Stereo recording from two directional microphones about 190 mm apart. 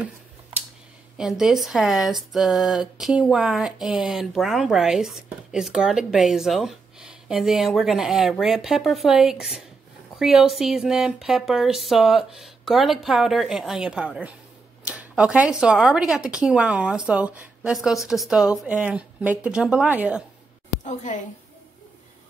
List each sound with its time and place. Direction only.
1.1 s speech: centre (ahead or behind)
20.8 s a woman's voice: 40° left (ahead or behind)